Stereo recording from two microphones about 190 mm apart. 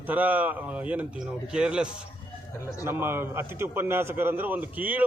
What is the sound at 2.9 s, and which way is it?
A man's voice, 10° right (ahead or behind).